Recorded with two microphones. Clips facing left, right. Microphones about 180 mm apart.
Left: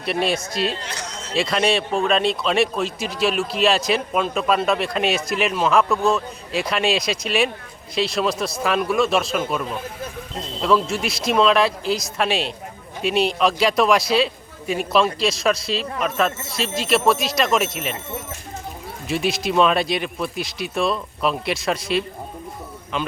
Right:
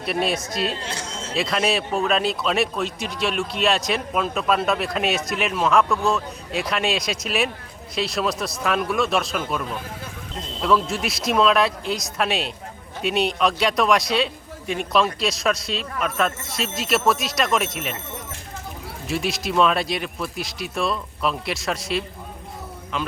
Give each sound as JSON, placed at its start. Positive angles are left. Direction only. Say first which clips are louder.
{"t": 0.0, "sound": "speech", "louder": "left 1 dB", "side_deg": 0}
{"t": 0.8, "sound": "a sound", "louder": "right 1 dB", "side_deg": -25}
{"t": 1.3, "sound": "speech", "louder": "left 2 dB", "side_deg": 0}
{"t": 19.0, "sound": "speech", "louder": "left 3 dB", "side_deg": 0}